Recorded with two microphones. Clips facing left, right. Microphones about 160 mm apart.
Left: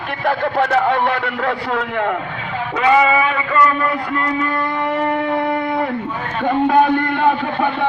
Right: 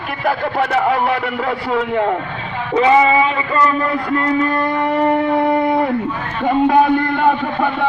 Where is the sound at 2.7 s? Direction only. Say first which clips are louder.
Right 2 dB; 30° right (ahead or behind).